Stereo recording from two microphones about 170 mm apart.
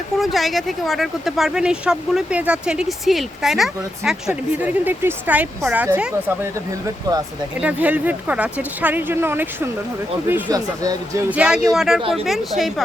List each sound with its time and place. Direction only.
0.2 s speech: centre (ahead or behind); by 11.2 s 20° right (ahead or behind)
11.3 s speech: 5° right (ahead or behind)